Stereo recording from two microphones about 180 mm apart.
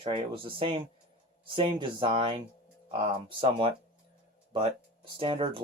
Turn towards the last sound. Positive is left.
turn(degrees=-30)  # may be behind; listen again after turning